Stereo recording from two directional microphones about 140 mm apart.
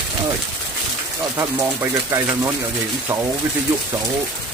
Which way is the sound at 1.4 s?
20° right (ahead or behind).